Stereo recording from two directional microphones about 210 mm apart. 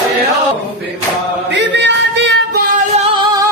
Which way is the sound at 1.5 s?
55° right (ahead or behind).